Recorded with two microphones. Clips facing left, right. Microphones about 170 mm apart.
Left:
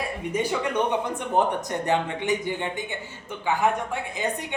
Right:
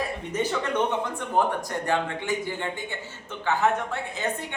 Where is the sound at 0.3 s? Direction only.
15° left (ahead or behind).